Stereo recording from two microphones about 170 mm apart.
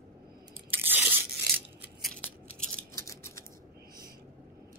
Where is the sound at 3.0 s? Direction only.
15° left (ahead or behind).